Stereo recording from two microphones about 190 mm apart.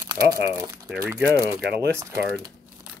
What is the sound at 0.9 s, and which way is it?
Speech, 5° right (ahead or behind).